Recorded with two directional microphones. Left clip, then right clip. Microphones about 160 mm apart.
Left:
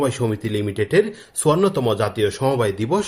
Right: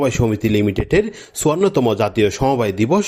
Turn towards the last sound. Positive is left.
turn(degrees=-40)  # may be behind; listen again after turning